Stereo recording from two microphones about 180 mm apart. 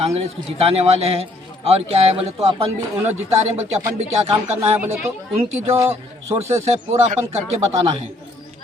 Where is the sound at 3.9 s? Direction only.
35° right (ahead or behind).